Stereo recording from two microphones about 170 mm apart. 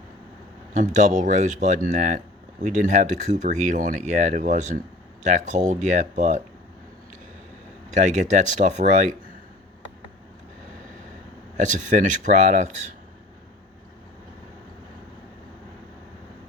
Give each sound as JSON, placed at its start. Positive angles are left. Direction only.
{"t": 0.7, "sound": "speech", "side_deg": -45}
{"t": 7.9, "sound": "speech", "side_deg": -45}
{"t": 11.5, "sound": "speech", "side_deg": -45}